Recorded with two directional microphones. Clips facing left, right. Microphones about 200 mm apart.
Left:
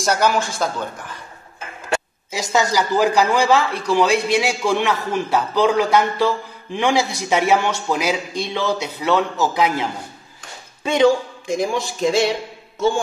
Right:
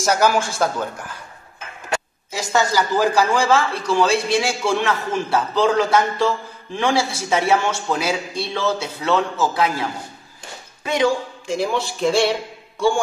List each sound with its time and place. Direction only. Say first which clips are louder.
0.0 s a man's voice: right 1 dB; 10° right (ahead or behind)
2.5 s a man's voice: left 1 dB; 15° left (ahead or behind)